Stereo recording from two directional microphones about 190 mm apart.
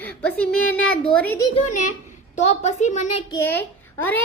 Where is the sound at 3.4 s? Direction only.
10° left (ahead or behind).